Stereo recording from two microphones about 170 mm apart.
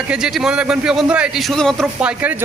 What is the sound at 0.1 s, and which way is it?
A man's voice, 5° right (ahead or behind).